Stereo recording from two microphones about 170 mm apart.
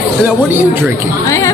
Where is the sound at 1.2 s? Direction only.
20° left (ahead or behind).